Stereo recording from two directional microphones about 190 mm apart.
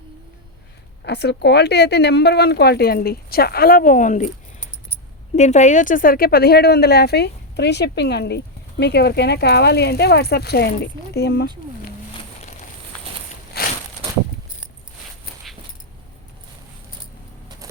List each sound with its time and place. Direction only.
1.0 s a woman's voice: 60° left (ahead or behind); by 4.3 s 40° left (ahead or behind)
5.4 s a woman's voice: 40° left (ahead or behind); by 11.4 s 60° left (ahead or behind)
13.5 s walk: 55° left (ahead or behind)